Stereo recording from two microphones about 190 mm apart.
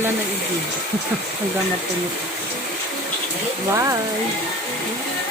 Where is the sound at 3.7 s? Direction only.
15° right (ahead or behind).